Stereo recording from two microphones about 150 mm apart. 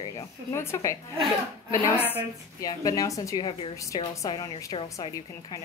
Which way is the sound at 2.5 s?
25° left (ahead or behind).